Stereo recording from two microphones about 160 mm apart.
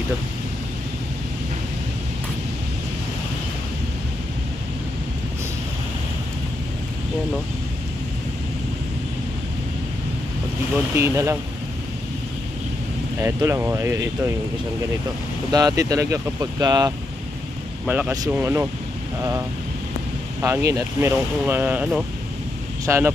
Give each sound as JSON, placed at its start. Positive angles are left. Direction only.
{"t": 11.0, "sound": "speech", "side_deg": -15}
{"t": 13.2, "sound": "speech", "side_deg": -20}
{"t": 15.5, "sound": "speech", "side_deg": -20}
{"t": 17.8, "sound": "speech", "side_deg": -10}
{"t": 20.4, "sound": "speech", "side_deg": -20}
{"t": 22.8, "sound": "speech", "side_deg": -15}